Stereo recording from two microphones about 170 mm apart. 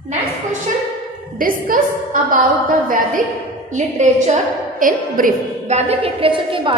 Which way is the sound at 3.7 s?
45° right (ahead or behind).